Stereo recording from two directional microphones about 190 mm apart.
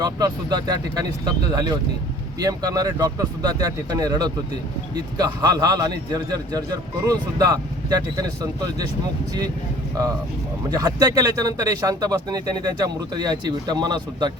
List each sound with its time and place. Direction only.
0.0 s speech: 20° right (ahead or behind)
10.7 s speech: 20° right (ahead or behind)